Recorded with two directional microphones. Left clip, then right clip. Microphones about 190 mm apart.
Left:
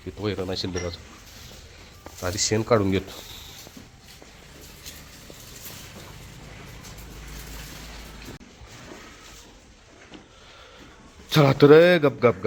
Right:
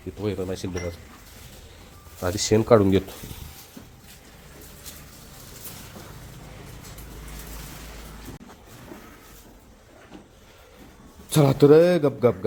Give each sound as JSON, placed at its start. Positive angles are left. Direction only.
{"t": 0.2, "sound": "a man's voice", "side_deg": 0}
{"t": 2.2, "sound": "speech", "side_deg": -40}
{"t": 11.3, "sound": "a man's voice", "side_deg": -10}